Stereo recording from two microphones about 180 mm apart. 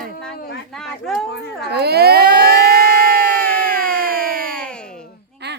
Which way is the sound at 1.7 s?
65° right (ahead or behind).